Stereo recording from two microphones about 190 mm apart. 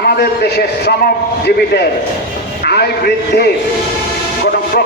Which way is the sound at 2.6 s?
55° left (ahead or behind).